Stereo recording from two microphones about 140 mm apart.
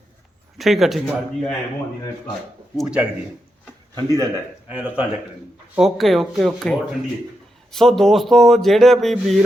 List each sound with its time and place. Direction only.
0.6 s speech: centre (ahead or behind)
2.7 s speech: 10° right (ahead or behind)
3.9 s a man's voice: 25° right (ahead or behind)
4.7 s speech: 10° right (ahead or behind)